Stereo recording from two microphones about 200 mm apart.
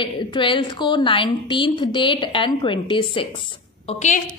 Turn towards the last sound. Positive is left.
turn(degrees=35)  # may be behind; listen again after turning